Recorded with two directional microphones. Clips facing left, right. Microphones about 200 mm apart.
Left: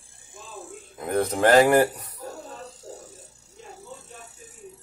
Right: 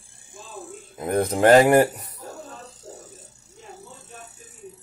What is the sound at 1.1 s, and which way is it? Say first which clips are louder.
Speech: right 2 dB; 15° right (ahead or behind).